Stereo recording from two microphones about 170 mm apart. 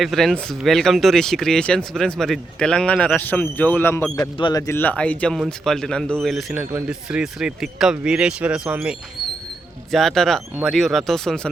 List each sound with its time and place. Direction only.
0.0 s speech: centre (ahead or behind)
4.4 s speech: 30° left (ahead or behind)
4.6 s speech: 10° left (ahead or behind)